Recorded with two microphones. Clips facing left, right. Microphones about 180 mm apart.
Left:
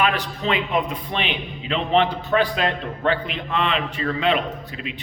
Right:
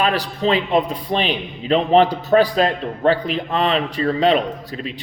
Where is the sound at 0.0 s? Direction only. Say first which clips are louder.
Right 3 dB; 35° right (ahead or behind).